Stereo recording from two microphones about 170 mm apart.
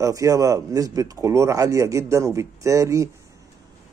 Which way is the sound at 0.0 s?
20° right (ahead or behind).